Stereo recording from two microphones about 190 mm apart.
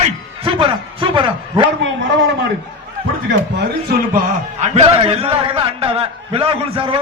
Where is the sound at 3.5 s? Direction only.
55° right (ahead or behind).